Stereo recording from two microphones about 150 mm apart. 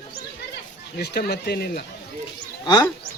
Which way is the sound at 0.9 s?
90° left.